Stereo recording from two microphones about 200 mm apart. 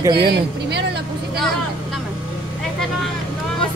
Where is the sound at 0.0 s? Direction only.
25° right (ahead or behind).